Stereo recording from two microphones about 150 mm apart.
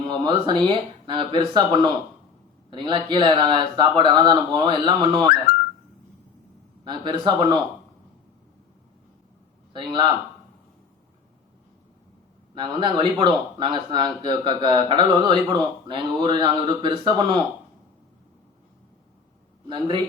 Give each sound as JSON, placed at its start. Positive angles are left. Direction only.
{"t": 0.1, "sound": "speech", "side_deg": -30}
{"t": 6.8, "sound": "speech", "side_deg": -30}
{"t": 9.7, "sound": "speech", "side_deg": -30}
{"t": 12.5, "sound": "speech", "side_deg": -30}
{"t": 19.6, "sound": "speech", "side_deg": -30}